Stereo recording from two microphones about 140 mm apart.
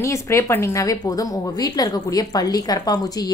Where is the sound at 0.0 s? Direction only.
20° left (ahead or behind).